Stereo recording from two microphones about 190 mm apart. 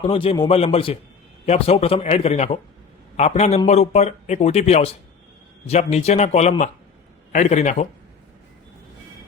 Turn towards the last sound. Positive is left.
turn(degrees=35)  # may be behind; listen again after turning